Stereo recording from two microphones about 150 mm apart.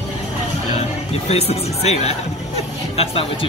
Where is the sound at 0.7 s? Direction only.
45° left (ahead or behind).